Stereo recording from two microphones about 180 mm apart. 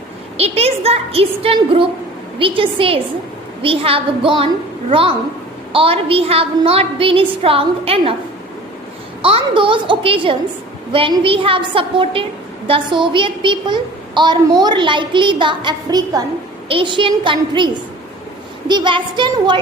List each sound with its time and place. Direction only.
0.3 s a woman's voice: 35° right (ahead or behind)
9.2 s a woman's voice: 30° right (ahead or behind)
18.7 s a woman's voice: 25° right (ahead or behind)